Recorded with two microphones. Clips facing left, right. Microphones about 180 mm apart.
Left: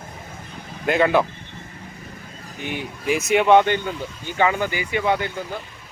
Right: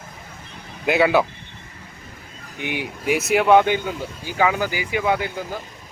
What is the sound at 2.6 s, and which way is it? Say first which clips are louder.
Speech: right 2 dB; 15° right (ahead or behind).